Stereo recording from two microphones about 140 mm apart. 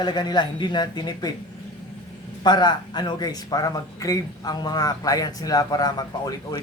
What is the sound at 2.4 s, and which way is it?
Speech, 30° left (ahead or behind).